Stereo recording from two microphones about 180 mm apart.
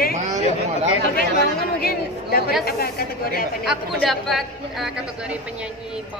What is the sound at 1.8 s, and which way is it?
Speech, 55° left (ahead or behind).